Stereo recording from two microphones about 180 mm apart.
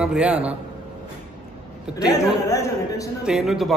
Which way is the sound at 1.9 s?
20° left (ahead or behind).